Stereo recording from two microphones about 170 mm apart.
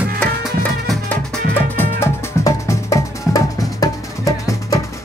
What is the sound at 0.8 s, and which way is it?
Music, 5° left (ahead or behind).